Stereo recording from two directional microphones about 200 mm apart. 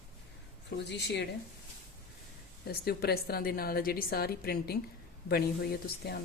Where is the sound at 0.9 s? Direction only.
60° left (ahead or behind).